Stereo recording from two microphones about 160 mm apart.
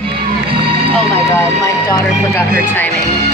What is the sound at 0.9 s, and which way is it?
Speech, 10° left (ahead or behind).